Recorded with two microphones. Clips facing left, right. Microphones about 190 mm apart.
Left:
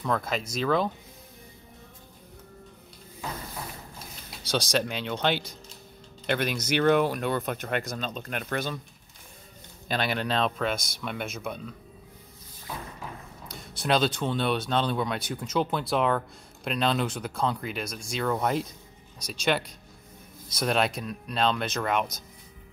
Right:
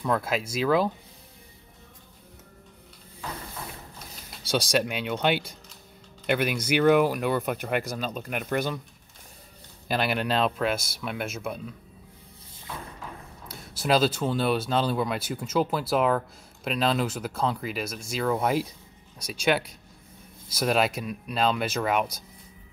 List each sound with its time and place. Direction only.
0.0 s speech: 5° right (ahead or behind)
4.5 s speech: 5° right (ahead or behind)
9.8 s speech: 5° right (ahead or behind)
13.5 s speech: 5° right (ahead or behind)